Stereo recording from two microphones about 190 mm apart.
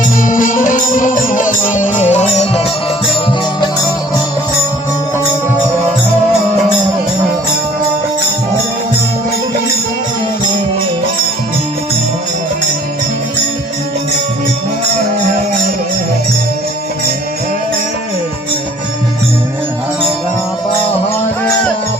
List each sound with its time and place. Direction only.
0.2 s music: 45° left (ahead or behind)